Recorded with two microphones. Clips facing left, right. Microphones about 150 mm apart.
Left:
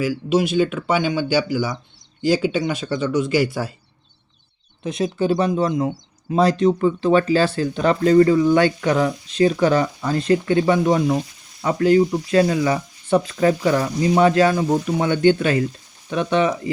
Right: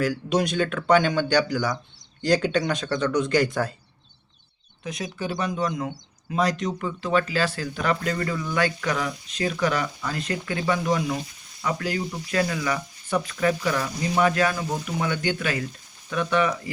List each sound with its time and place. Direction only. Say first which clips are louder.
0.0 s speech: left 4 dB; 5° left (ahead or behind)
4.8 s speech: left 10 dB; 25° left (ahead or behind)